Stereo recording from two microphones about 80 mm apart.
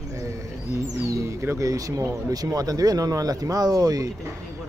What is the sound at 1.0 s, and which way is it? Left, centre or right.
Speech, right.